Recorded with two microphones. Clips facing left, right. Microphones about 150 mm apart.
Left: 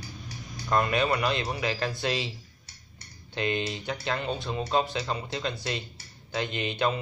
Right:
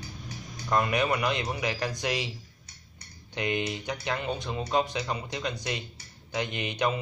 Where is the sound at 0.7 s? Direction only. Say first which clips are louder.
Left 1 dB; 15° right (ahead or behind).